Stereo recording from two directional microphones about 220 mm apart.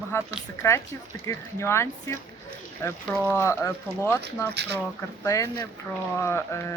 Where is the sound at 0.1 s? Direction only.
10° left (ahead or behind).